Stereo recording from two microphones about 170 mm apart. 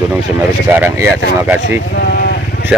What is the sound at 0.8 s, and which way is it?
A man's voice, 10° right (ahead or behind).